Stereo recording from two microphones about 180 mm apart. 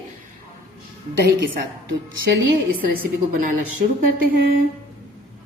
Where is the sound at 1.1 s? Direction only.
65° right (ahead or behind).